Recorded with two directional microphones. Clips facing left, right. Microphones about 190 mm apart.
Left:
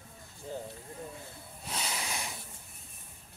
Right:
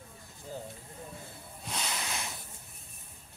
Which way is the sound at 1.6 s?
5° left (ahead or behind).